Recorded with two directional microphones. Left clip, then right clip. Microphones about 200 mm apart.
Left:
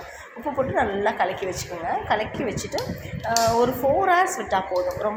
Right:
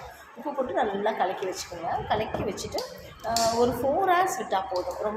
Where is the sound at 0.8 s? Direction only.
20° left (ahead or behind).